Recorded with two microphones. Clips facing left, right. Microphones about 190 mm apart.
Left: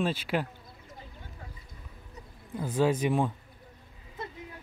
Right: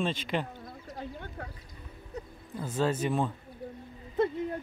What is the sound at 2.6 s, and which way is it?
Speech, 10° left (ahead or behind).